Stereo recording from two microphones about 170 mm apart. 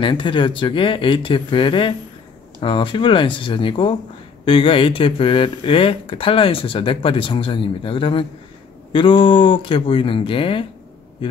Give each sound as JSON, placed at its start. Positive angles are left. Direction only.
{"t": 0.0, "sound": "speech", "side_deg": 30}